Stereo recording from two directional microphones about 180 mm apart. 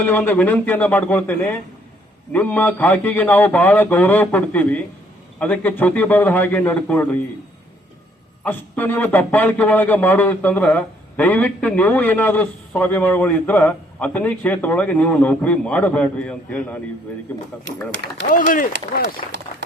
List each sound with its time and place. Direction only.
0.0 s speech: 10° left (ahead or behind)
8.4 s speech: 10° left (ahead or behind)
18.3 s speech: 50° left (ahead or behind)